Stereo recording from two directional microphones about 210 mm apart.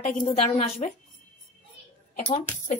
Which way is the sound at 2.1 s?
35° left (ahead or behind).